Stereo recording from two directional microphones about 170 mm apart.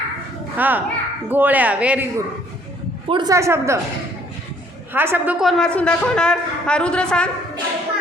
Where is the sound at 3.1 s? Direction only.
25° right (ahead or behind).